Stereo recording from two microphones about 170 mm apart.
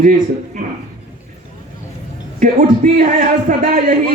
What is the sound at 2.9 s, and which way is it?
A man's voice, 50° right (ahead or behind).